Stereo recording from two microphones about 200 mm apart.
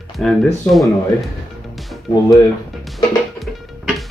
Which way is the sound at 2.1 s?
35° left (ahead or behind).